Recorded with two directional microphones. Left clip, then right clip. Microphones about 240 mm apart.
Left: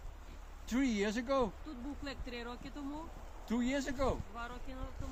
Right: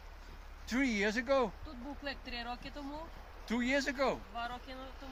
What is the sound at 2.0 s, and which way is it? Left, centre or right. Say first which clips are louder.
Speech: right 5 dB; right.